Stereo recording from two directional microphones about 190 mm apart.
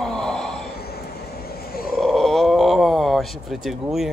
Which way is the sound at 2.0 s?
Centre (ahead or behind).